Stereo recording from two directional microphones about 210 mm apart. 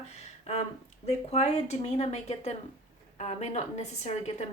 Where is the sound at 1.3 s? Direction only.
30° left (ahead or behind).